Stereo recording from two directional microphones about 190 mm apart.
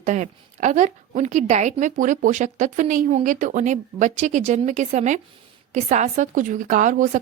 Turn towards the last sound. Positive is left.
turn(degrees=-45)  # may be behind; listen again after turning